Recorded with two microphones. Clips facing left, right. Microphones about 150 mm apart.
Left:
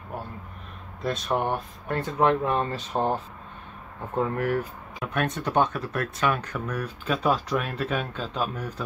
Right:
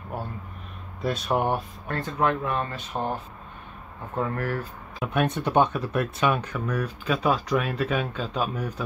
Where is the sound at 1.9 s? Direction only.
20° left (ahead or behind).